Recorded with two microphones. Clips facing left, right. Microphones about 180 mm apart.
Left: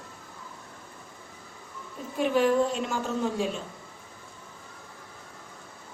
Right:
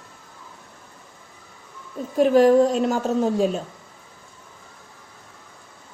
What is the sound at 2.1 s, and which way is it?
A woman's voice, 40° right (ahead or behind).